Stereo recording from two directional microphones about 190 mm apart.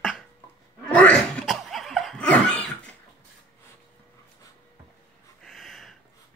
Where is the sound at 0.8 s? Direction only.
5° left (ahead or behind).